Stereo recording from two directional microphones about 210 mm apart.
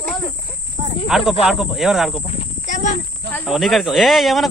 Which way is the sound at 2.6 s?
35° left (ahead or behind).